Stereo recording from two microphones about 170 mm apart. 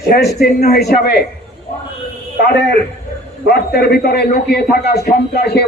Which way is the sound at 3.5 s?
70° left (ahead or behind).